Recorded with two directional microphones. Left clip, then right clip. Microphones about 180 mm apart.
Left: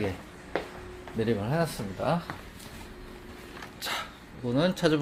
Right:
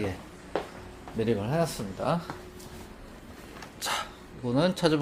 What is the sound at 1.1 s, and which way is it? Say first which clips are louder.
Speech: right 1 dB; centre (ahead or behind).